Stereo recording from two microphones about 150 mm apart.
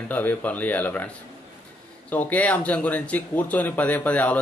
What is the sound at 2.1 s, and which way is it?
Speech, 10° left (ahead or behind).